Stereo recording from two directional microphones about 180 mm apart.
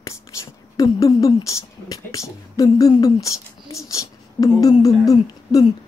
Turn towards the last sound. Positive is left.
turn(degrees=20)  # may be behind; listen again after turning